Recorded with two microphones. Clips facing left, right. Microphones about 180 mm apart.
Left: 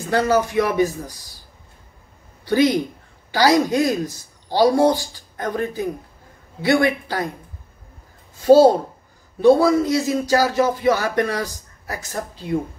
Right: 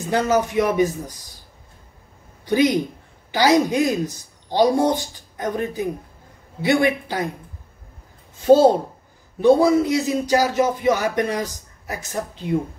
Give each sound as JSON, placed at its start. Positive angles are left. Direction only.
{"t": 0.3, "sound": "speech", "side_deg": -20}
{"t": 2.4, "sound": "speech", "side_deg": -20}
{"t": 8.4, "sound": "speech", "side_deg": -20}